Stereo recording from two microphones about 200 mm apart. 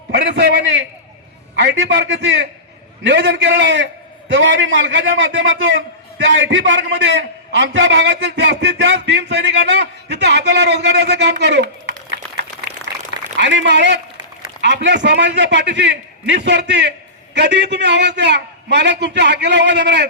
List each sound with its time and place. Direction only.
0.1 s a man's voice: 55° right (ahead or behind); by 5.8 s 70° right (ahead or behind)
6.2 s a man's voice: 60° right (ahead or behind)
12.9 s a sound: 55° right (ahead or behind)
13.3 s a man's voice: 60° right (ahead or behind)